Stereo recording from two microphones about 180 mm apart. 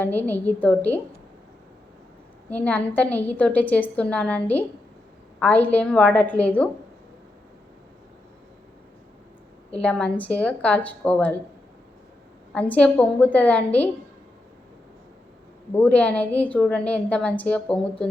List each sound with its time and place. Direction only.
0.0 s a woman's voice: 10° left (ahead or behind)
2.5 s a woman's voice: 10° left (ahead or behind)
9.8 s a woman's voice: 5° left (ahead or behind)
12.5 s a woman's voice: 10° left (ahead or behind)
15.7 s a woman's voice: 10° left (ahead or behind)